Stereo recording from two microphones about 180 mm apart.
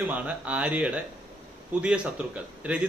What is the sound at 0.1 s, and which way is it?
Speech, 5° right (ahead or behind).